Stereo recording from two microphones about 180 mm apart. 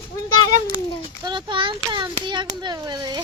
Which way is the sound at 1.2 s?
25° right (ahead or behind).